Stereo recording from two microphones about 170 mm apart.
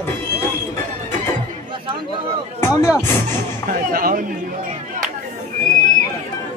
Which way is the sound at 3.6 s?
55° right (ahead or behind).